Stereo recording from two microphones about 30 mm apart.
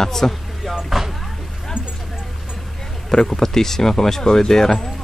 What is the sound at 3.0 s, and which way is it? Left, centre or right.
Speech, centre.